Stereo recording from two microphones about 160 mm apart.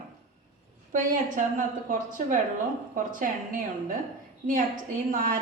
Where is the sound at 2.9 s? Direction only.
60° right (ahead or behind).